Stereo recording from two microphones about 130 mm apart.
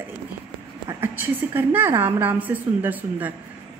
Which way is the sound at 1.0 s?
15° right (ahead or behind).